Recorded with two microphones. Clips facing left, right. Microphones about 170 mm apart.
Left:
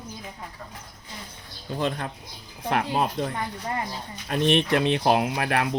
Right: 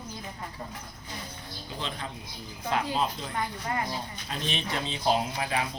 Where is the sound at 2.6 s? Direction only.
65° left (ahead or behind).